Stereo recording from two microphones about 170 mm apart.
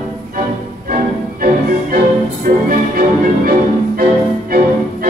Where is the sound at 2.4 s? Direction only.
55° right (ahead or behind).